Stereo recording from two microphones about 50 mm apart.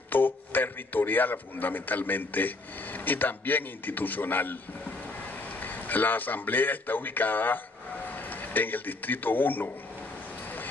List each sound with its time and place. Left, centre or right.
0.1 s a man's voice: left